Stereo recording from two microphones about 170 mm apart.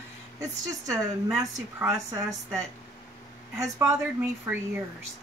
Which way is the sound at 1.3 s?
5° right (ahead or behind).